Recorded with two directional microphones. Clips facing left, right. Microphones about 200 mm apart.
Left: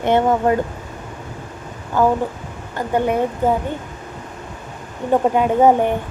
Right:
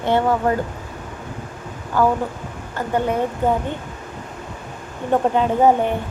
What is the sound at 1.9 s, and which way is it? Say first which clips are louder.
Speech: left 1 dB; 20° left (ahead or behind).